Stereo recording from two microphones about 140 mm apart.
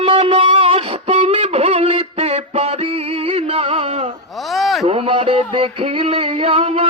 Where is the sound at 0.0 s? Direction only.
40° right (ahead or behind).